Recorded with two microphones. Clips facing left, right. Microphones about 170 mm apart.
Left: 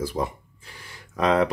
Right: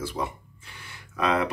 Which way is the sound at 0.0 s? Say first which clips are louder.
Left 4 dB; 40° left (ahead or behind).